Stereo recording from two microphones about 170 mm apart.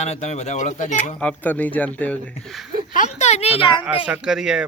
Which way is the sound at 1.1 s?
10° left (ahead or behind).